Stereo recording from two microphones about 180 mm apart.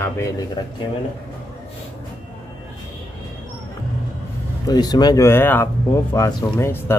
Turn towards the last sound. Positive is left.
turn(degrees=15)  # may be behind; listen again after turning